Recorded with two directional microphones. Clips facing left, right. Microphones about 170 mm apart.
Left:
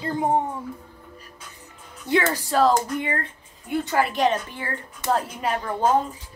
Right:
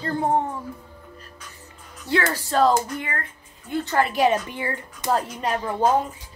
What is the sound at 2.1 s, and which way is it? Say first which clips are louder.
Speech: left 2 dB; 20° left (ahead or behind).